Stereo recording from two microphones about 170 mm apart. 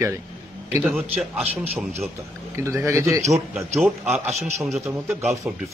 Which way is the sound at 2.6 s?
15° right (ahead or behind).